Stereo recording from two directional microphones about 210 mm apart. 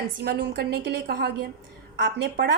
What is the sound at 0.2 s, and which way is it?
A woman's voice, 50° right (ahead or behind).